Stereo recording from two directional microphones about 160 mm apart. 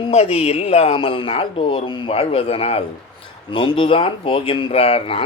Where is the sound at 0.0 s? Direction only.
40° left (ahead or behind).